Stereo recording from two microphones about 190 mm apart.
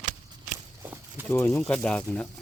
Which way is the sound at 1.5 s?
5° left (ahead or behind).